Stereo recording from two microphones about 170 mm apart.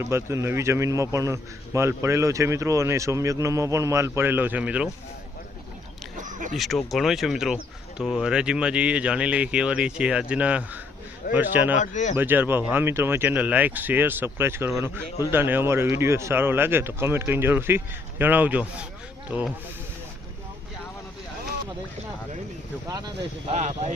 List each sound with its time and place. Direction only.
0.0 s a man's voice: 15° right (ahead or behind)
6.1 s a sound: 50° right (ahead or behind)
6.6 s a man's voice: centre (ahead or behind)
11.8 s speech: 45° left (ahead or behind)
12.1 s a man's voice: 10° right (ahead or behind)
22.9 s speech: 25° right (ahead or behind)
23.6 s speech: 40° right (ahead or behind)